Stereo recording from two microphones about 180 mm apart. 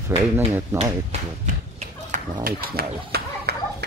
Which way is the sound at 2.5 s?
55° right (ahead or behind).